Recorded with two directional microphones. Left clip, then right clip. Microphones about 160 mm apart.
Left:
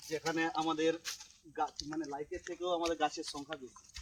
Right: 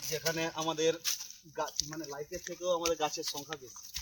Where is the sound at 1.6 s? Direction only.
45° right (ahead or behind).